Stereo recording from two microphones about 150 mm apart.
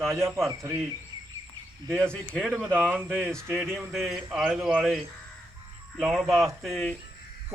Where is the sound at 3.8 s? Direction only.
Centre (ahead or behind).